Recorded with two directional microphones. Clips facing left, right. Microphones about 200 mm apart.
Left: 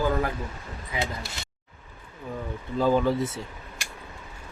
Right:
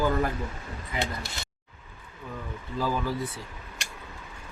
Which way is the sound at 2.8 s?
25° left (ahead or behind).